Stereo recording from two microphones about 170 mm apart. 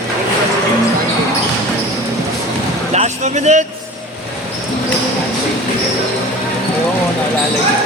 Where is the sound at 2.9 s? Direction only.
45° right (ahead or behind).